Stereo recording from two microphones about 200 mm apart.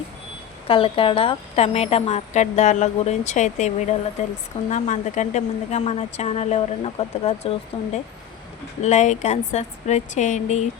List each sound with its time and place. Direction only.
0.7 s a woman's voice: 25° left (ahead or behind)